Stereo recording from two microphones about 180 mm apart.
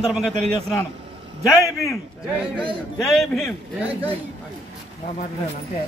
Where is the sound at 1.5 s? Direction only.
15° left (ahead or behind).